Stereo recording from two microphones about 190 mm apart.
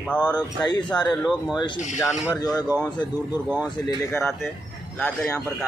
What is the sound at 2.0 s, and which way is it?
Speech, 15° left (ahead or behind).